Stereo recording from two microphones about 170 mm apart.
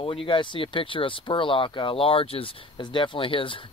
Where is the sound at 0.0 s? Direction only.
30° left (ahead or behind).